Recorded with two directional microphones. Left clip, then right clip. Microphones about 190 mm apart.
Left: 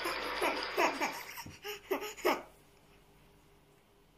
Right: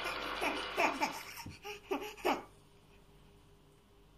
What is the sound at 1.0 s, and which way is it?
Laughter, centre (ahead or behind).